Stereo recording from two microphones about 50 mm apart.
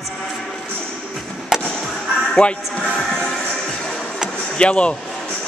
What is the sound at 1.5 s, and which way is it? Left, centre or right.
Fireworks, centre.